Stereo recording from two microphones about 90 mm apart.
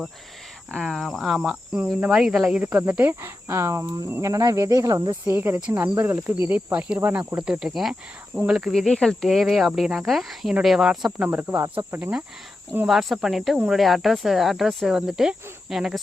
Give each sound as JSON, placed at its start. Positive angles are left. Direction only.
{"t": 0.7, "sound": "speech", "side_deg": 5}
{"t": 2.7, "sound": "speech", "side_deg": -20}
{"t": 8.7, "sound": "speech", "side_deg": 5}
{"t": 11.3, "sound": "speech", "side_deg": -15}
{"t": 12.9, "sound": "speech", "side_deg": -5}